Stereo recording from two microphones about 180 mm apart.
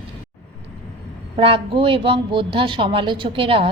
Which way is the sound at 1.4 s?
30° right (ahead or behind).